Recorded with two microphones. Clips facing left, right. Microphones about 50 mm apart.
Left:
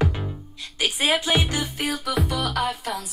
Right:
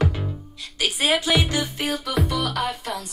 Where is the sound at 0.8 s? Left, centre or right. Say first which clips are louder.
Right 1 dB; left.